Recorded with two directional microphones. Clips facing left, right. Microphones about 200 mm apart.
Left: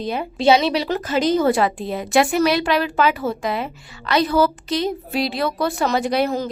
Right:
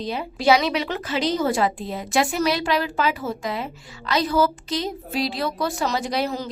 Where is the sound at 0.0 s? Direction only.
55° left (ahead or behind).